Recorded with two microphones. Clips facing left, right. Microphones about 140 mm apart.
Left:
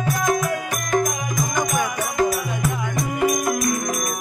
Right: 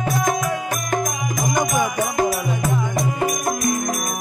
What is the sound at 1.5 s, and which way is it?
Music, 15° right (ahead or behind).